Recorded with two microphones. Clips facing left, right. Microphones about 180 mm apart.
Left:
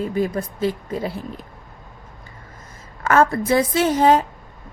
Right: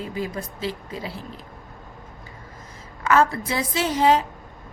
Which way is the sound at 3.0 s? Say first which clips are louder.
Left 3 dB; 50° left (ahead or behind).